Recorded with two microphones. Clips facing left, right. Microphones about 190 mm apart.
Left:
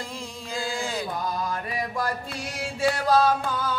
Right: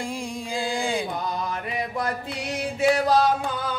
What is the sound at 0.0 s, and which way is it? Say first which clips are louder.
Music: right 6 dB; 15° right (ahead or behind).